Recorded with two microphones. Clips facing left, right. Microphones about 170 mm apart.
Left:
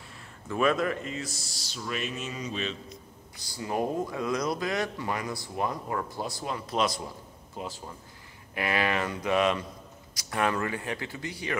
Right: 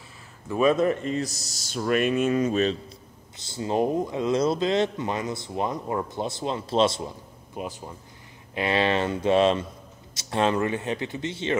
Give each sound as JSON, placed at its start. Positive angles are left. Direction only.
{"t": 0.5, "sound": "speech", "side_deg": -20}
{"t": 1.0, "sound": "speech", "side_deg": -40}
{"t": 3.3, "sound": "speech", "side_deg": -25}